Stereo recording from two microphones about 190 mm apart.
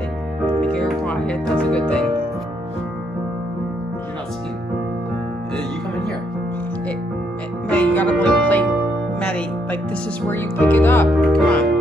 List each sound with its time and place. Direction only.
0.6 s speech: 5° left (ahead or behind)
7.7 s music: 10° left (ahead or behind)
10.3 s speech: 10° left (ahead or behind)